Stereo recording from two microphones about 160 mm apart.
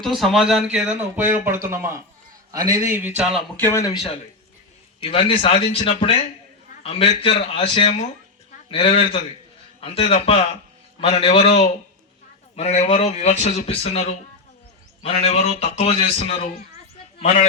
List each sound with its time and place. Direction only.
0.0 s speech: centre (ahead or behind); by 3.1 s 15° right (ahead or behind)
3.6 s a man's voice: 20° left (ahead or behind)
5.0 s a man's voice: 35° left (ahead or behind)